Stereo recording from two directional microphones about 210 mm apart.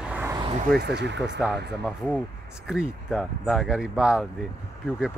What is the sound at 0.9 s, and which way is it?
Speech, 55° right (ahead or behind).